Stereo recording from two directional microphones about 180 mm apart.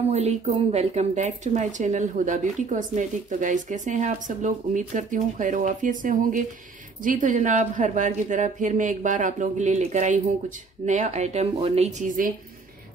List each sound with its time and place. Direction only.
0.1 s speech: 35° right (ahead or behind)